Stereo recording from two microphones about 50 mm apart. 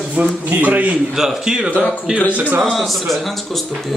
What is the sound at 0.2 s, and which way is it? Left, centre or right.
Speech, right.